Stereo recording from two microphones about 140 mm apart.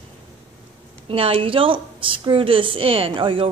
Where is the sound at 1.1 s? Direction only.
40° right (ahead or behind).